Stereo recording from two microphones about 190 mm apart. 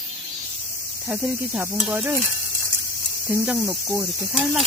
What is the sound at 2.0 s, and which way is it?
Speech, 10° right (ahead or behind).